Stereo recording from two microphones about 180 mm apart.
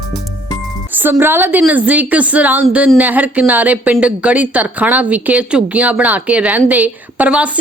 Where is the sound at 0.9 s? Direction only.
10° right (ahead or behind).